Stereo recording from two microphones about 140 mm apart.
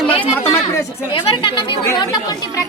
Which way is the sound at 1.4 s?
40° left (ahead or behind).